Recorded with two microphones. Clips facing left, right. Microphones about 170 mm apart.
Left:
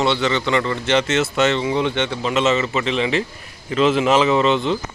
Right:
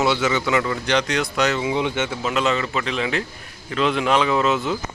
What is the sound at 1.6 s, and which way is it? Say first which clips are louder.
A man's voice: left 2 dB; 10° right (ahead or behind).